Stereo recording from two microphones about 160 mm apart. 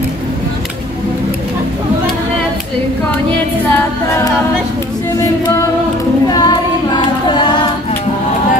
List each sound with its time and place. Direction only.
3.7 s a capella: 15° left (ahead or behind)
5.2 s music: 20° left (ahead or behind)
6.2 s choir: 25° left (ahead or behind)